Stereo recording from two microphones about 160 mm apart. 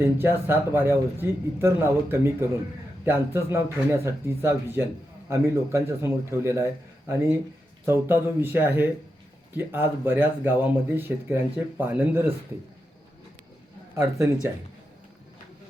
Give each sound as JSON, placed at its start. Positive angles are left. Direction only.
{"t": 0.0, "sound": "speech", "side_deg": -15}
{"t": 7.9, "sound": "speech", "side_deg": -15}
{"t": 13.9, "sound": "speech", "side_deg": -20}